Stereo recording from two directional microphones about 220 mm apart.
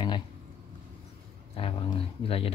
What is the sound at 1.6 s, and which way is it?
Speech, 25° left (ahead or behind).